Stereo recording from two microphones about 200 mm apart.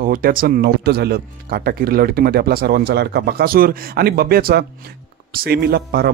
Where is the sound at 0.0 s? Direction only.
45° right (ahead or behind).